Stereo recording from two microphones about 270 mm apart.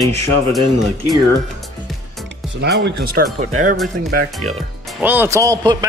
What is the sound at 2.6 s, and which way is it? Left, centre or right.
Speech, right.